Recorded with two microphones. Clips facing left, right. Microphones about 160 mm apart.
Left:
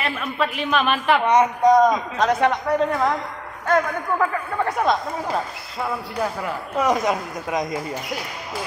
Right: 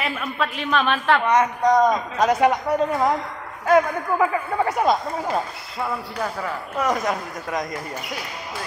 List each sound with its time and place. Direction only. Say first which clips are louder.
0.0 s a woman's voice: left 1 dB; centre (ahead or behind)
1.9 s speech: even; 5° right (ahead or behind)
6.8 s speech: left 3 dB; 20° left (ahead or behind)